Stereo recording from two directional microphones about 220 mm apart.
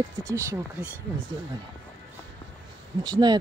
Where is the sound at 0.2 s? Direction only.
15° right (ahead or behind).